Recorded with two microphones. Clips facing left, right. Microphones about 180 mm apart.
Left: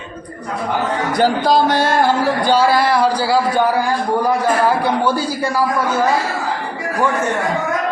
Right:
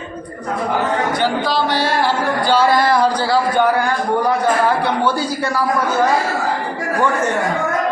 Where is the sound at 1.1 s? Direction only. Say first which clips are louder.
Left 4 dB; 40° left (ahead or behind).